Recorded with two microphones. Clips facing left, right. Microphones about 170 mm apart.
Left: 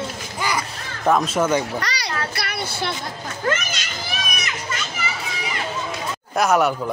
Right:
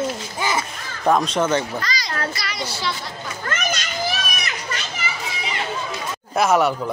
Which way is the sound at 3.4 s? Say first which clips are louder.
Left 2 dB; 50° right (ahead or behind).